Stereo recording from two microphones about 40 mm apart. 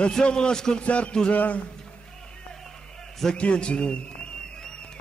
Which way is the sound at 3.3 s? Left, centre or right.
Left.